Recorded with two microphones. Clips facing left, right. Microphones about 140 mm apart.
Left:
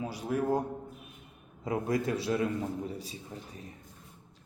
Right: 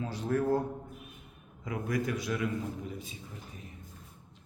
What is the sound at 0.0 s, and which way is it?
Speech, 10° left (ahead or behind).